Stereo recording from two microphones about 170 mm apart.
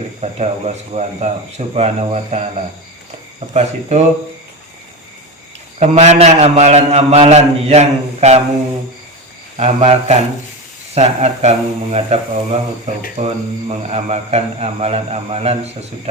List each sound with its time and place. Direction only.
0.2 s a man's voice: 40° right (ahead or behind)
3.5 s a man's voice: 40° right (ahead or behind)
5.8 s a man's voice: 40° right (ahead or behind)
9.6 s a man's voice: 40° right (ahead or behind)